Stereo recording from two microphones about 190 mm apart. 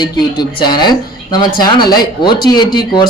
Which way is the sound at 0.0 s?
20° left (ahead or behind).